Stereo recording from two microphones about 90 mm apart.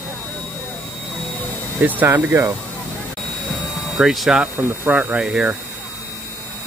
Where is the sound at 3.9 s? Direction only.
5° right (ahead or behind).